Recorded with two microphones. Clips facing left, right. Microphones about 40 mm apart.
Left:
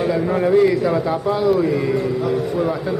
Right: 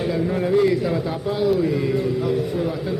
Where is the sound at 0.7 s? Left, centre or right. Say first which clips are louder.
Left 3 dB; centre.